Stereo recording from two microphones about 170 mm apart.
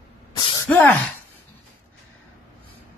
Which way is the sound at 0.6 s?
10° left (ahead or behind).